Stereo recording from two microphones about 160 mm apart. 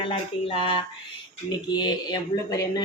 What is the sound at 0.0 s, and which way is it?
Speech, 35° left (ahead or behind).